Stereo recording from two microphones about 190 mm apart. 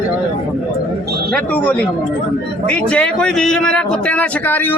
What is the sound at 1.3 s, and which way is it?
Speech, 10° left (ahead or behind).